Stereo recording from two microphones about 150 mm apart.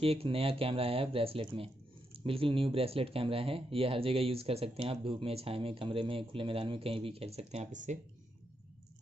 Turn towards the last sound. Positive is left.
turn(degrees=-55)  # may be behind; listen again after turning